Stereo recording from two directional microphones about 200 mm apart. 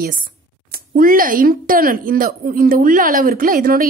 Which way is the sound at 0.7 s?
45° right (ahead or behind).